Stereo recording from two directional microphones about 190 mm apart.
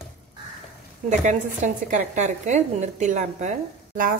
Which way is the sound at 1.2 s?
40° right (ahead or behind).